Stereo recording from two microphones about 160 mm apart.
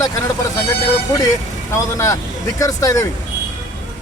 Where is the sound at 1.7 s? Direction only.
20° left (ahead or behind).